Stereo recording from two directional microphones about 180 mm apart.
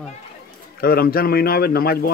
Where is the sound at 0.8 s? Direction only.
55° left (ahead or behind).